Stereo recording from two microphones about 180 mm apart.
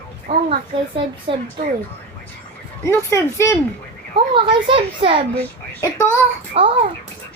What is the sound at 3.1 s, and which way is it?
Speech, 15° left (ahead or behind).